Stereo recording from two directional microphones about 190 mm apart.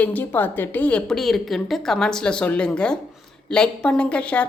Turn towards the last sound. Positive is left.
turn(degrees=5)  # may be behind; listen again after turning